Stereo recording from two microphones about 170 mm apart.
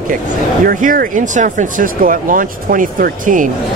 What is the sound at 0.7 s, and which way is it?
Speech, 55° right (ahead or behind).